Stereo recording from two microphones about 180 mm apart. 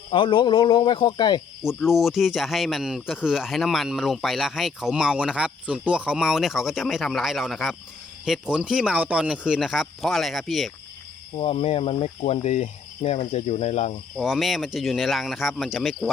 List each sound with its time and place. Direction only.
0.1 s speech: 25° left (ahead or behind)
1.6 s speech: centre (ahead or behind)
11.3 s speech: 30° left (ahead or behind)
14.2 s speech: centre (ahead or behind)